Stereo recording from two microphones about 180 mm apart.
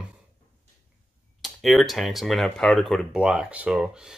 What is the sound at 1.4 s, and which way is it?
Speech, centre (ahead or behind).